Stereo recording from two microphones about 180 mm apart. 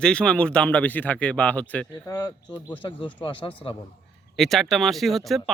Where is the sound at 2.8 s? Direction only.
25° left (ahead or behind).